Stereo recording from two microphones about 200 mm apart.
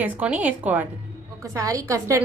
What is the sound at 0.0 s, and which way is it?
A woman's voice, 10° right (ahead or behind).